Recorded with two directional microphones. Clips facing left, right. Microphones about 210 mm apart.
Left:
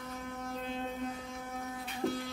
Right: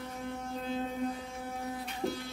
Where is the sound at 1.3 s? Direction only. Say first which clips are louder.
Right 2 dB; 35° right (ahead or behind).